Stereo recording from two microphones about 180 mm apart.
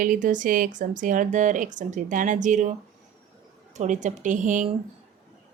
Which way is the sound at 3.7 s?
40° right (ahead or behind).